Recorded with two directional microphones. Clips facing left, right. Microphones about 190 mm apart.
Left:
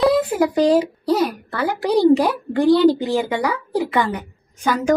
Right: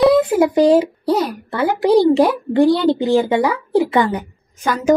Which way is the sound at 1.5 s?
25° right (ahead or behind).